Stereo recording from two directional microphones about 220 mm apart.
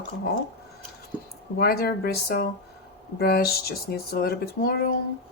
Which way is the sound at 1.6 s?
45° left (ahead or behind).